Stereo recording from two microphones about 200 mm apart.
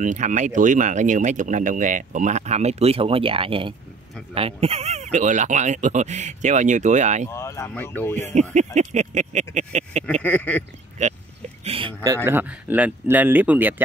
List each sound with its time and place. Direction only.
0.0 s speech: 40° right (ahead or behind)
7.2 s speech: 15° left (ahead or behind)
8.7 s speech: 35° right (ahead or behind)
10.2 s speech: 10° left (ahead or behind)
11.6 s speech: 30° right (ahead or behind)
12.3 s speech: 10° right (ahead or behind)